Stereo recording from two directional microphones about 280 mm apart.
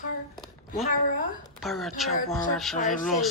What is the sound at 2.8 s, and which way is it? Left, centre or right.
Speech, left.